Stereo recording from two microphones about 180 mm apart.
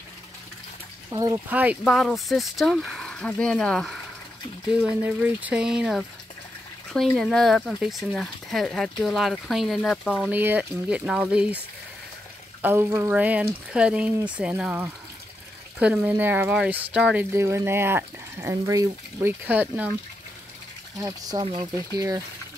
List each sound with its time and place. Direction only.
1.1 s speech: 20° right (ahead or behind)
1.5 s speech: 10° right (ahead or behind)
4.8 s speech: 10° right (ahead or behind)
12.6 s speech: 15° right (ahead or behind)
21.0 s speech: 20° right (ahead or behind)